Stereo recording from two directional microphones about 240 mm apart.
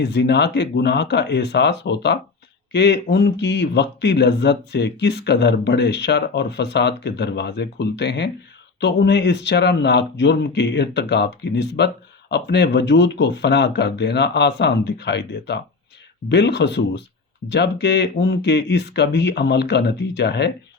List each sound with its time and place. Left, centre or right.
0.0 s speech: left